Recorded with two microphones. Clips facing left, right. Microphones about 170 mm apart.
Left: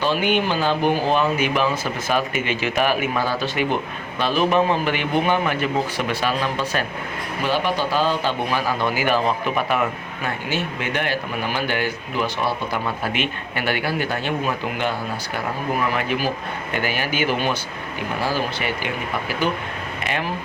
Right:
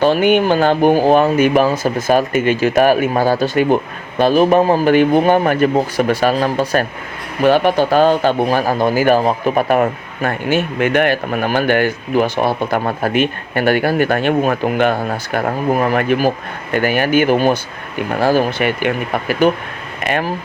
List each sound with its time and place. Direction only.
0.0 s speech: 50° right (ahead or behind)
7.4 s speech: 55° right (ahead or behind)